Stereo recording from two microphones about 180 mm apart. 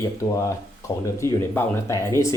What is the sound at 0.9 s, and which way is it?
Speech, 25° left (ahead or behind).